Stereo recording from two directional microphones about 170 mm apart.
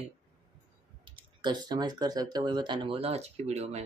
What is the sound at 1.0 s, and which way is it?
Speech, 25° right (ahead or behind).